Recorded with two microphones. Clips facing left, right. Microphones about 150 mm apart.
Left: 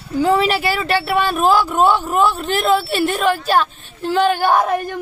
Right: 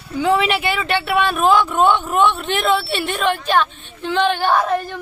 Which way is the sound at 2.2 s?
35° left (ahead or behind).